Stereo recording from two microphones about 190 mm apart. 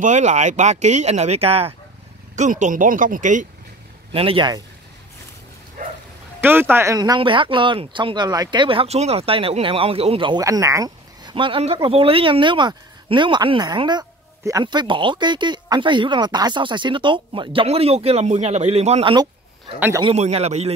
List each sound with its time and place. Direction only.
0.0 s speech: 40° right (ahead or behind)
4.1 s speech: 30° right (ahead or behind)
5.8 s bow-wow: 40° right (ahead or behind)
6.4 s speech: 10° right (ahead or behind); by 20.7 s 35° right (ahead or behind)